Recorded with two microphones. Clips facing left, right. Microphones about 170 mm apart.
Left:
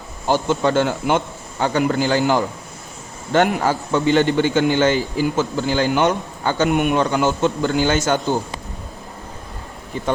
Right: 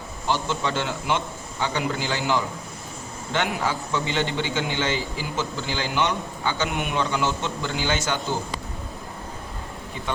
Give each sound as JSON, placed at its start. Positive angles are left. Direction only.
{"t": 0.3, "sound": "a man's voice", "side_deg": 50}